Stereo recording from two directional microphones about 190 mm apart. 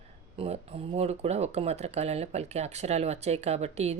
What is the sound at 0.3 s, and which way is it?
Speech, 35° right (ahead or behind).